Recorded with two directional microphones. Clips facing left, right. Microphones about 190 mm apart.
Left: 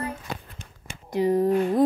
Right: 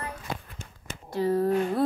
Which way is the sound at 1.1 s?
20° left (ahead or behind).